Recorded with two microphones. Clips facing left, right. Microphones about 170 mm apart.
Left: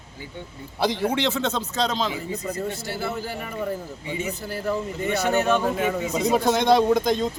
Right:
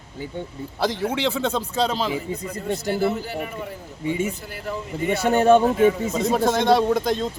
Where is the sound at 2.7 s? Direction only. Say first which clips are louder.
Right 7 dB; 50° right (ahead or behind).